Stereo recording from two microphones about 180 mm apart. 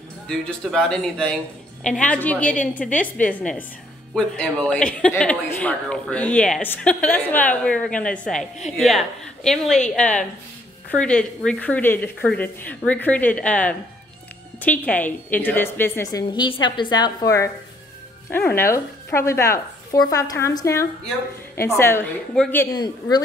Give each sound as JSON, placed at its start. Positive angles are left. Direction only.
{"t": 0.3, "sound": "a woman's voice", "side_deg": 5}
{"t": 22.7, "sound": "a woman's voice", "side_deg": 20}